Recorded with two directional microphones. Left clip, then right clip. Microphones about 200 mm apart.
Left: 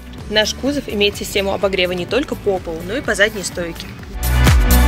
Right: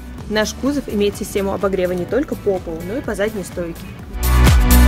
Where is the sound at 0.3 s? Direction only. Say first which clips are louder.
Left 2 dB; 60° right (ahead or behind).